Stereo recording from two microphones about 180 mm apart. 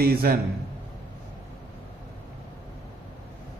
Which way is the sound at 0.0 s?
55° right (ahead or behind).